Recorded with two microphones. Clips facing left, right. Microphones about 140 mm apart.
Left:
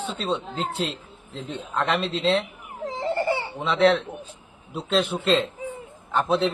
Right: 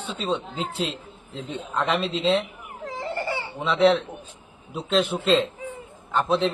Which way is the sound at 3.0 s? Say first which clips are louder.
Left 5 dB; 20° left (ahead or behind).